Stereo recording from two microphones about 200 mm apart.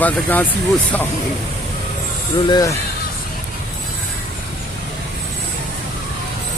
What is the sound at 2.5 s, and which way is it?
Speech, 15° left (ahead or behind).